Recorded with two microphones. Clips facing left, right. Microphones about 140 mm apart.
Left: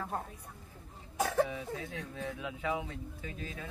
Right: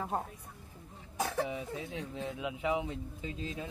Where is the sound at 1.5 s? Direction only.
20° right (ahead or behind).